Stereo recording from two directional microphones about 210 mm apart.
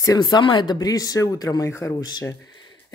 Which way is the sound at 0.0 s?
20° left (ahead or behind).